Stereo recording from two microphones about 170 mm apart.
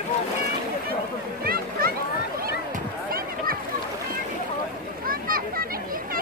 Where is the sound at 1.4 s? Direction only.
60° right (ahead or behind).